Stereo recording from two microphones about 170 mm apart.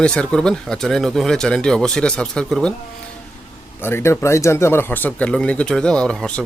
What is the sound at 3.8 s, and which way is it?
Speech, 15° left (ahead or behind).